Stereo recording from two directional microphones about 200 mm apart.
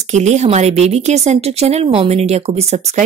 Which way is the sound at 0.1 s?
35° right (ahead or behind).